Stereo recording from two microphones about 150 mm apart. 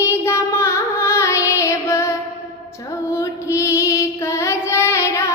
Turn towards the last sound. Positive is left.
turn(degrees=20)  # may be behind; listen again after turning